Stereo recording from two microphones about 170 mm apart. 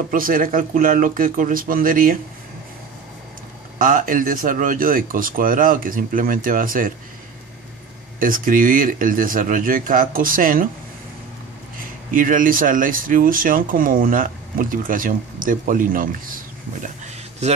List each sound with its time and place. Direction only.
0.1 s speech: 55° right (ahead or behind)
3.7 s speech: 55° right (ahead or behind)
8.2 s speech: 55° right (ahead or behind)
12.1 s speech: 50° right (ahead or behind)